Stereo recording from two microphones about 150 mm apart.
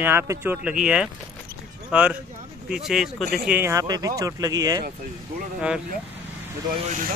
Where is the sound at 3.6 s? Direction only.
20° right (ahead or behind).